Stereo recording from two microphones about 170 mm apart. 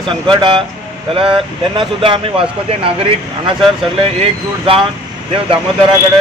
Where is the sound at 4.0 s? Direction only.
35° right (ahead or behind).